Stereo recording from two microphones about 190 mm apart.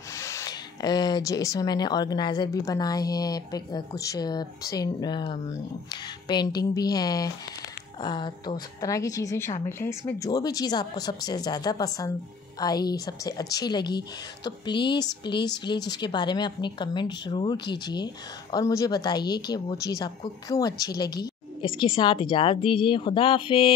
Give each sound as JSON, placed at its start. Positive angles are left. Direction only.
{"t": 0.2, "sound": "a woman's voice", "side_deg": 15}